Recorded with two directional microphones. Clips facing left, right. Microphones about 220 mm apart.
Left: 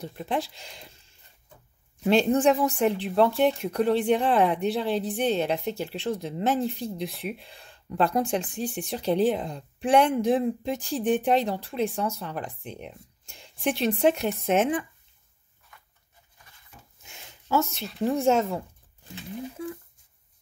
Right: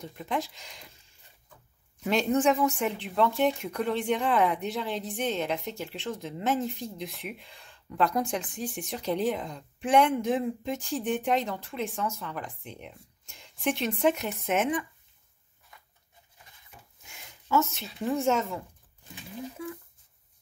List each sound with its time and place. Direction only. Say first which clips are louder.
0.0 s speech: left 3 dB; 30° left (ahead or behind)
2.0 s speech: left 4 dB; 30° left (ahead or behind)
17.1 s a sound: left 1 dB; 30° left (ahead or behind)
18.0 s speech: left 4 dB; 30° left (ahead or behind)